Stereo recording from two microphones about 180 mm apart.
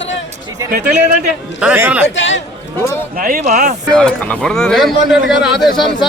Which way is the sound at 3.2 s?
50° right (ahead or behind).